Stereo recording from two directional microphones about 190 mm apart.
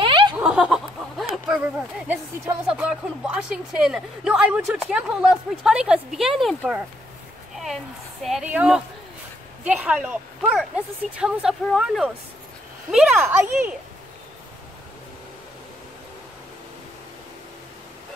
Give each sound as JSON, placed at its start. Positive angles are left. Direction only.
{"t": 0.0, "sound": "snicker", "side_deg": -25}
{"t": 0.4, "sound": "a sound", "side_deg": -5}
{"t": 2.0, "sound": "speech", "side_deg": -10}